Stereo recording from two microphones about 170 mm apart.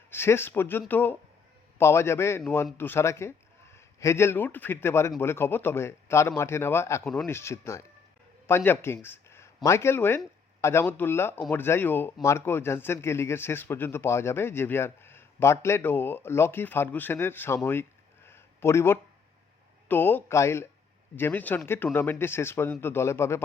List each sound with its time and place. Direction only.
0.1 s a man's voice: 15° left (ahead or behind)